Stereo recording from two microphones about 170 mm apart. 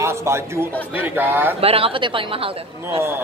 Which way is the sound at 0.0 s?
15° right (ahead or behind).